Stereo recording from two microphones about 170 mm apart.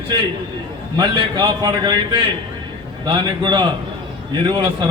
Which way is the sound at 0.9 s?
25° right (ahead or behind).